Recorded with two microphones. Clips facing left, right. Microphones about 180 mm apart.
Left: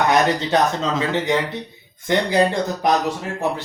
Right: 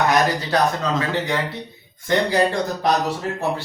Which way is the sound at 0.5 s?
25° left (ahead or behind).